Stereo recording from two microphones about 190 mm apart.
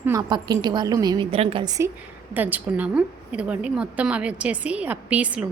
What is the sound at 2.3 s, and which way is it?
A woman's voice, 10° right (ahead or behind).